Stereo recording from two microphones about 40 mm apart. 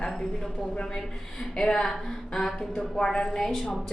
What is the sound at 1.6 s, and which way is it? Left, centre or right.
Speech, left.